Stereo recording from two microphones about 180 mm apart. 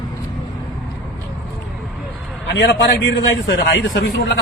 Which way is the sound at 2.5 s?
85° left.